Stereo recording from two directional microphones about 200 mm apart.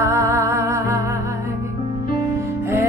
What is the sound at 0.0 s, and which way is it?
Music, 15° right (ahead or behind).